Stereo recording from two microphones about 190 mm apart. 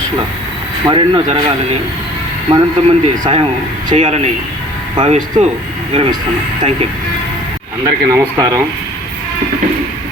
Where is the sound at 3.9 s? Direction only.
35° right (ahead or behind).